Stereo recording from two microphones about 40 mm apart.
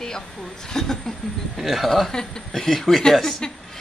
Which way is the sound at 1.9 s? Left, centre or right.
Centre.